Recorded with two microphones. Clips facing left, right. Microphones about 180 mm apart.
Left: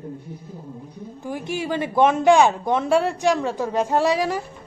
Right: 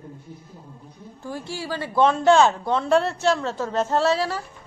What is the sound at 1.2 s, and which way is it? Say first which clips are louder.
Speech: left 4 dB; 15° left (ahead or behind).